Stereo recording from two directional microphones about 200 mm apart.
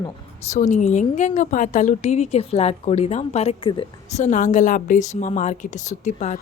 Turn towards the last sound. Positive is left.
turn(degrees=35)  # may be behind; listen again after turning